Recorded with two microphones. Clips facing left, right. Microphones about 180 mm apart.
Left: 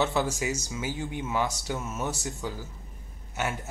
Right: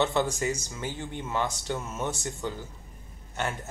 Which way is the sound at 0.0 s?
Centre (ahead or behind).